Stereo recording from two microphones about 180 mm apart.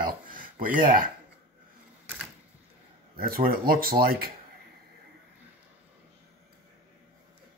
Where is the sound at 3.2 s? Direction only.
55° right (ahead or behind).